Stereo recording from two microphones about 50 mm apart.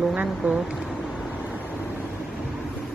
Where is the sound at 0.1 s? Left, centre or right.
Centre.